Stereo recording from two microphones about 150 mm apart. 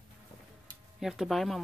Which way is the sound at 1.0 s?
Centre (ahead or behind).